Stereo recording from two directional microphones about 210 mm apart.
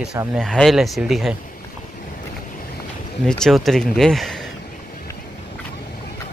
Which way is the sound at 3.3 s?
Centre (ahead or behind).